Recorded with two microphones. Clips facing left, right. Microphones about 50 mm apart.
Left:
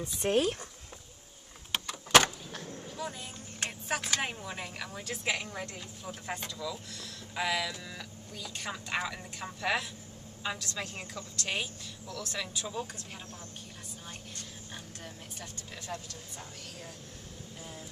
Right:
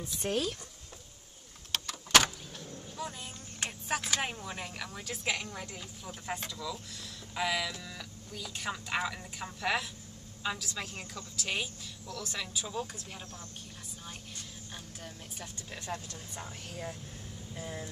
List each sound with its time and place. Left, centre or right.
0.3 s speech: left
1.7 s door: centre
3.0 s vehicle: centre
3.6 s speech: centre
15.0 s speech: centre